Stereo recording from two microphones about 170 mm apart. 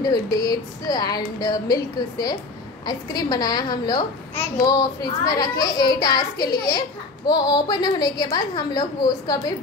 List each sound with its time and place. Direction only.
0.0 s a child's voice: 25° left (ahead or behind)